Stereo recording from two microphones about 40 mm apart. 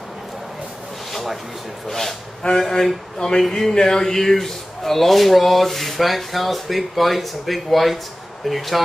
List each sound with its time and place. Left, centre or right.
1.1 s speech: centre
2.4 s speech: left
3.4 s speech: centre
3.7 s speech: centre